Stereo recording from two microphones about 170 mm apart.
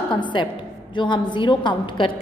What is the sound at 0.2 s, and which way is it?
A woman's voice, 30° left (ahead or behind).